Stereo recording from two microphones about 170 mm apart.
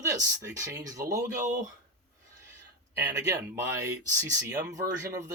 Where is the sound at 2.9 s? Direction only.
20° right (ahead or behind).